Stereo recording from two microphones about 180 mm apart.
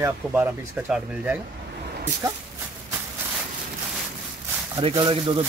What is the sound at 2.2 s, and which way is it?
Speech, 20° right (ahead or behind).